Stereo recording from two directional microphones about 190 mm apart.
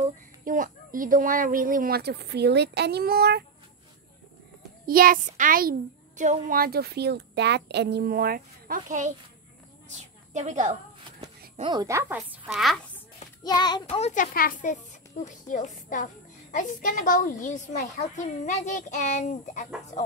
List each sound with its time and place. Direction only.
0.5 s a child's voice: 45° right (ahead or behind)
4.8 s a child's voice: 50° right (ahead or behind)
9.8 s a sound: 40° right (ahead or behind)
11.7 s a woman's voice: 15° right (ahead or behind)
13.4 s a child's voice: 20° left (ahead or behind)
13.8 s a child's voice: 35° left (ahead or behind)